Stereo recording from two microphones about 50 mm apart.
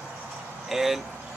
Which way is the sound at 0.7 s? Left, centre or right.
Centre.